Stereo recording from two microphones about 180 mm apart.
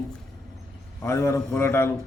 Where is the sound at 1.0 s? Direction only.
15° left (ahead or behind).